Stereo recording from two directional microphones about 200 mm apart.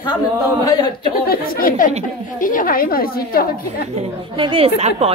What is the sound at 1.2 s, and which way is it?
A woman's voice, 45° left (ahead or behind).